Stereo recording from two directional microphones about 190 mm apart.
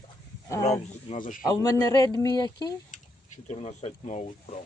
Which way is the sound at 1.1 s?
45° left (ahead or behind).